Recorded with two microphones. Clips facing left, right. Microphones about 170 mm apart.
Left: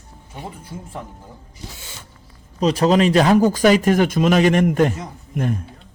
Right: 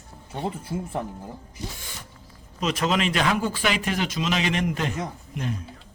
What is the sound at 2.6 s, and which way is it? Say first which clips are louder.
Speech: left 9 dB; 35° left (ahead or behind).